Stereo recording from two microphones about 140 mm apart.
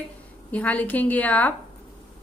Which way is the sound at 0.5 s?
10° left (ahead or behind).